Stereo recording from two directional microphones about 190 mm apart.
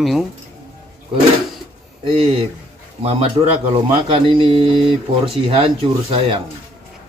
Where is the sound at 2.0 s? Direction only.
30° right (ahead or behind).